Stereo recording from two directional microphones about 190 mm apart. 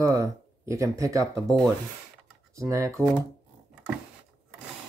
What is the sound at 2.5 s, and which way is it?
Speech, 15° right (ahead or behind).